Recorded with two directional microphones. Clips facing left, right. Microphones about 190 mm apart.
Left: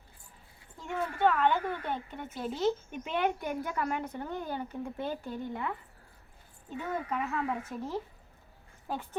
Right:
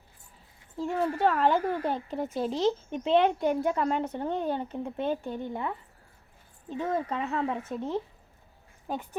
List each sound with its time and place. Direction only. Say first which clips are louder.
0.8 s speech: right 3 dB; 35° right (ahead or behind); by 9.0 s 15° right (ahead or behind)